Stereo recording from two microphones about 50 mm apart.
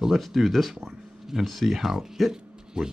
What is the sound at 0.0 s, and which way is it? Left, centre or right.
Speech, centre.